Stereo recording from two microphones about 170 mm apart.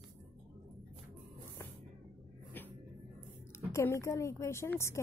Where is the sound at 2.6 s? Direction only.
10° left (ahead or behind).